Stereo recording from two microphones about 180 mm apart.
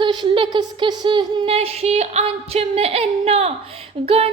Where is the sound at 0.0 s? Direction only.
25° right (ahead or behind).